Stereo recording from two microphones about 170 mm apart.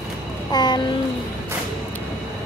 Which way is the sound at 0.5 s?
25° left (ahead or behind).